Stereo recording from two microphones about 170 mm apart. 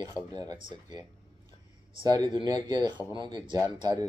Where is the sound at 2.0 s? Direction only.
25° right (ahead or behind).